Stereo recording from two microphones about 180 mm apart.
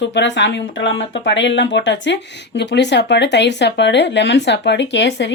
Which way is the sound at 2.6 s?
75° left (ahead or behind).